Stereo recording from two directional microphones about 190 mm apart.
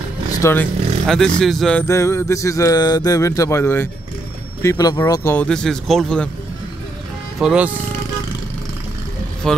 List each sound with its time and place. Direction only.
0.4 s speech: 15° left (ahead or behind)
1.0 s speech: centre (ahead or behind)
7.3 s speech: 5° right (ahead or behind)
9.4 s speech: centre (ahead or behind)